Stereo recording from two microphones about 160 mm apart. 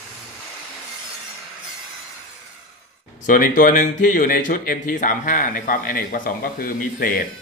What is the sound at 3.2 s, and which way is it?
Speech, 55° left (ahead or behind).